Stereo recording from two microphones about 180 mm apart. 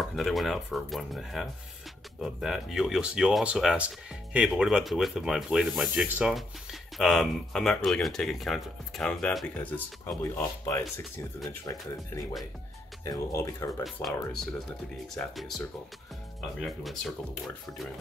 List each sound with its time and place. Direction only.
0.0 s speech: centre (ahead or behind); by 11.2 s 15° left (ahead or behind)
13.0 s speech: 15° left (ahead or behind)
13.8 s speech: centre (ahead or behind)
16.6 s speech: centre (ahead or behind)